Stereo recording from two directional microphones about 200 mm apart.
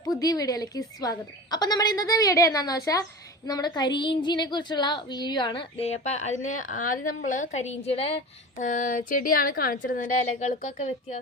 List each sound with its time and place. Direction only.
0.0 s a woman's voice: 20° left (ahead or behind); by 11.2 s 35° left (ahead or behind)